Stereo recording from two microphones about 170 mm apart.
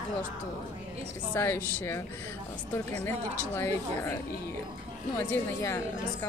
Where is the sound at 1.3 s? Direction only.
10° left (ahead or behind).